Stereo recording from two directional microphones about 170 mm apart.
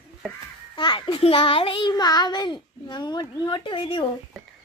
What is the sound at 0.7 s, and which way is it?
A child's voice, 30° left (ahead or behind).